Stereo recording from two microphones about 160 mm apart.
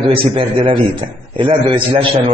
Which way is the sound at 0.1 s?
35° right (ahead or behind).